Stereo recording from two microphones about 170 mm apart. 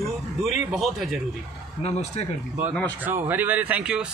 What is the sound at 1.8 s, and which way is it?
Speech, 40° left (ahead or behind).